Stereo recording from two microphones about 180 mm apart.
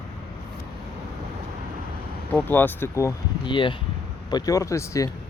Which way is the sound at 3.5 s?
25° left (ahead or behind).